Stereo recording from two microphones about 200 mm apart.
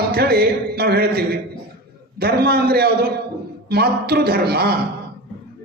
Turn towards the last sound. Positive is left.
turn(degrees=-50)  # may be behind; listen again after turning